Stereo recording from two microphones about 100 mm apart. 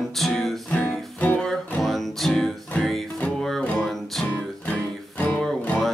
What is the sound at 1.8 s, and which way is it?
Music, centre (ahead or behind).